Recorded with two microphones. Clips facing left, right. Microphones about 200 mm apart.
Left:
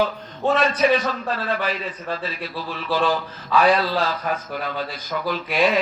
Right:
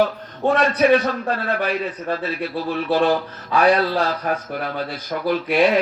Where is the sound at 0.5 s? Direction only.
60° right (ahead or behind).